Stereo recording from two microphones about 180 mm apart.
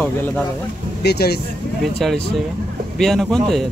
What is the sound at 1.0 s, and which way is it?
Speech, 65° left (ahead or behind).